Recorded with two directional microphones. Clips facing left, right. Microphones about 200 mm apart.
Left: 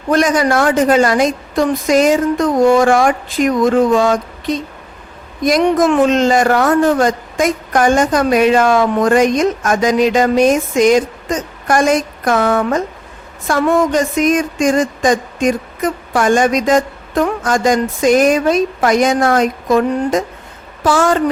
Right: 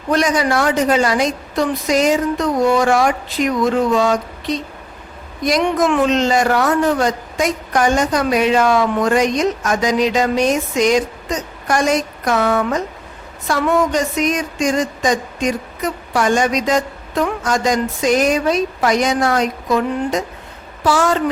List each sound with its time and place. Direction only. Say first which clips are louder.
0.1 s speech: left 3 dB; 50° left (ahead or behind)